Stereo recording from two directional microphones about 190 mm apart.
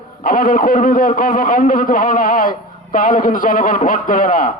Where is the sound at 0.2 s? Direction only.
50° left (ahead or behind).